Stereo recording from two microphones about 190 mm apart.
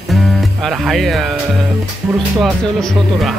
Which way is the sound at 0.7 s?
Centre (ahead or behind).